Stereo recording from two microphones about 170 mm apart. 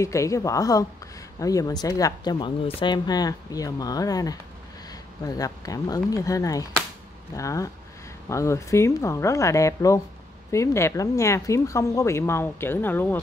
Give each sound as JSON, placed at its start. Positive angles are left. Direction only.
{"t": 0.0, "sound": "speech", "side_deg": 20}